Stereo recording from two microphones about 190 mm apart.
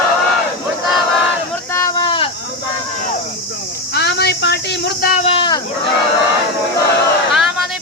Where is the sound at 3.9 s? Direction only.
60° left (ahead or behind).